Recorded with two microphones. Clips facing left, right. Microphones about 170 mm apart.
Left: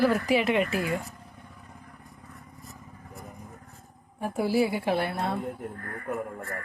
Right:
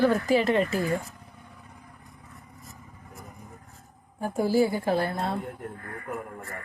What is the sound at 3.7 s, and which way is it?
Speech, centre (ahead or behind).